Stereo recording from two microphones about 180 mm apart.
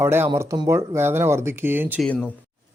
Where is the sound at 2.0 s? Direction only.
10° left (ahead or behind).